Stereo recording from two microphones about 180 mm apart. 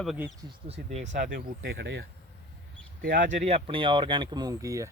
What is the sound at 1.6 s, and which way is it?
Speech, 80° right.